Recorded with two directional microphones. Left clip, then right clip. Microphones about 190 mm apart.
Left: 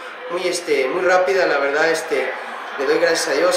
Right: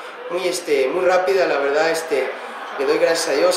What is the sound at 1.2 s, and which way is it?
Speech, 40° left (ahead or behind).